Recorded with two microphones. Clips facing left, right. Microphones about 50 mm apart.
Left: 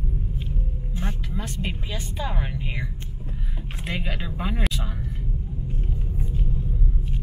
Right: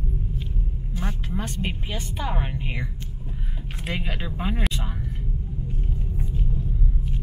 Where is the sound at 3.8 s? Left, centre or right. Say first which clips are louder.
Even; centre.